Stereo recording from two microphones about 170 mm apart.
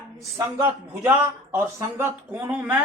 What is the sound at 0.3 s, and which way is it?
Speech, 15° right (ahead or behind).